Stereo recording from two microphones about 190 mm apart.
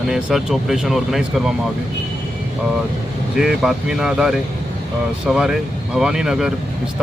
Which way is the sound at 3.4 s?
Centre (ahead or behind).